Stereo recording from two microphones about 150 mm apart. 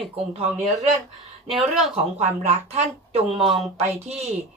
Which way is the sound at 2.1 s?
45° right (ahead or behind).